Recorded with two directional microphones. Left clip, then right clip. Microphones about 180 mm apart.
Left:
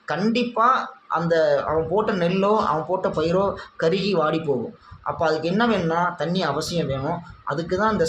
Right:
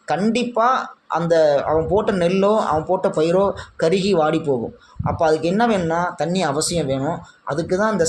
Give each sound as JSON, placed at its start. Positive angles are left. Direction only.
{"t": 0.1, "sound": "speech", "side_deg": -25}